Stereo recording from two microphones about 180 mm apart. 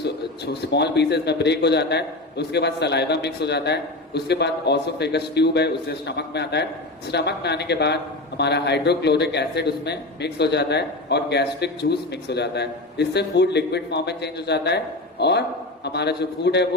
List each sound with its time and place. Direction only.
0.0 s speech: 70° left (ahead or behind)